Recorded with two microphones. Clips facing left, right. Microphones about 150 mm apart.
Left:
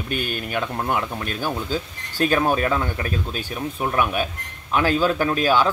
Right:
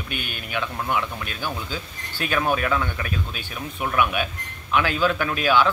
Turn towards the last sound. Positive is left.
turn(degrees=40)  # may be behind; listen again after turning